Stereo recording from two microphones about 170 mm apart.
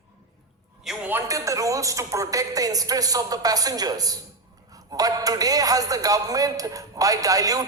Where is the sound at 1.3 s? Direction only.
20° right (ahead or behind).